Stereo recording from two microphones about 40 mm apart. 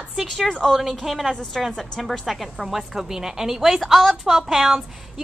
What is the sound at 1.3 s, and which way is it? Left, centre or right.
A woman's voice, centre.